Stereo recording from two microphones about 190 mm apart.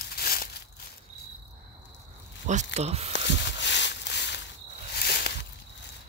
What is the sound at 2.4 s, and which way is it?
Speech, 35° right (ahead or behind).